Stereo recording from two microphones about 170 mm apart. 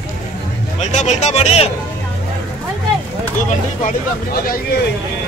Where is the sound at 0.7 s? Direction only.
40° left (ahead or behind).